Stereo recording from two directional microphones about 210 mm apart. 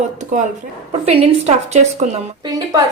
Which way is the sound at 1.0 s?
30° right (ahead or behind).